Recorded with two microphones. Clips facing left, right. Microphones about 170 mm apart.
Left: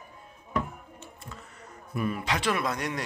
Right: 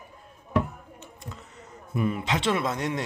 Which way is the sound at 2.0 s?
20° right (ahead or behind).